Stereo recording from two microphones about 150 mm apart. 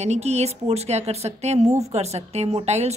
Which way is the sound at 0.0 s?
45° right (ahead or behind).